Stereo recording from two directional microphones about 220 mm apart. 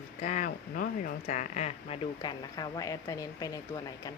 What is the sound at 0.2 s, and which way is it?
Speech, 35° left (ahead or behind).